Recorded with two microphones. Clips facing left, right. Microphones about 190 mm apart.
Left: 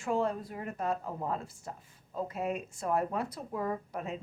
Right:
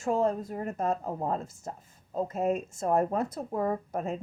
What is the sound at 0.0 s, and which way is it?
A woman's voice, 40° right (ahead or behind).